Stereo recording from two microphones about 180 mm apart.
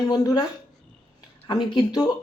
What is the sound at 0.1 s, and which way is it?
Speech, 20° left (ahead or behind).